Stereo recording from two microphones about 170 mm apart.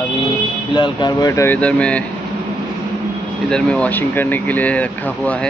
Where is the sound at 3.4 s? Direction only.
5° left (ahead or behind).